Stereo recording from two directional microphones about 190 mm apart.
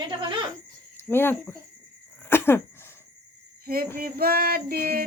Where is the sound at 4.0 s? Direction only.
50° right (ahead or behind).